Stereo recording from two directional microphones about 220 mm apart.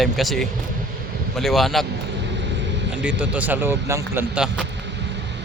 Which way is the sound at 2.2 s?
50° right (ahead or behind).